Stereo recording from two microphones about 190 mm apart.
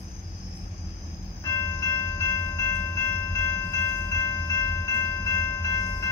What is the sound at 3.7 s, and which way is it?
Train, 20° left (ahead or behind).